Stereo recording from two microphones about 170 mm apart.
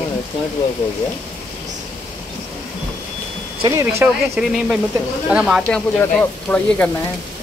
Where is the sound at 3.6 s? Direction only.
15° right (ahead or behind).